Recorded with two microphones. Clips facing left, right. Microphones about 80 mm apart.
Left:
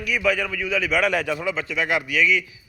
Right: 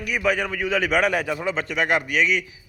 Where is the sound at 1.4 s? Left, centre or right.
Right.